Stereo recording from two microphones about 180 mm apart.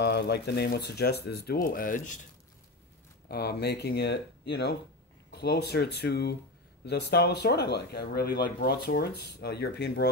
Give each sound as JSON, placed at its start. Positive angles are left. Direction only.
{"t": 0.0, "sound": "speech", "side_deg": 65}
{"t": 3.3, "sound": "speech", "side_deg": 60}